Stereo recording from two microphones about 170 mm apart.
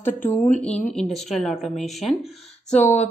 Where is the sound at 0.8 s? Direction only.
5° left (ahead or behind).